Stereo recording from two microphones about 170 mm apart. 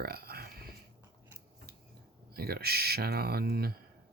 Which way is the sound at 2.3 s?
65° right (ahead or behind).